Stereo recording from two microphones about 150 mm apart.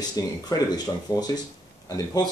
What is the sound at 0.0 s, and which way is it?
Speech, 25° left (ahead or behind).